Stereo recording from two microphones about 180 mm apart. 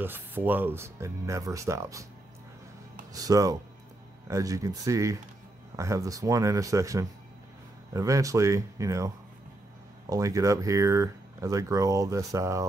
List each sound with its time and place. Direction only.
0.0 s speech: 10° right (ahead or behind)
3.1 s speech: 20° right (ahead or behind)